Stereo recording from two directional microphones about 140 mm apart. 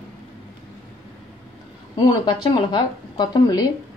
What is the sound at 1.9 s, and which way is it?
Speech, 35° left (ahead or behind).